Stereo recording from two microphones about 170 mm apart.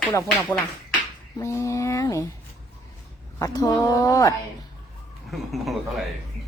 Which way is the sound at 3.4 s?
20° left (ahead or behind).